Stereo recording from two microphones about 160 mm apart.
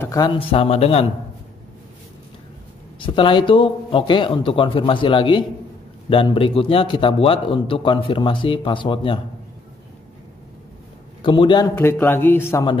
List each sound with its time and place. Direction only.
0.0 s a sound: 20° left (ahead or behind)
0.3 s a man's voice: 35° left (ahead or behind)
3.0 s a man's voice: 30° left (ahead or behind)
11.2 s speech: 30° left (ahead or behind)
11.6 s speech: 15° left (ahead or behind)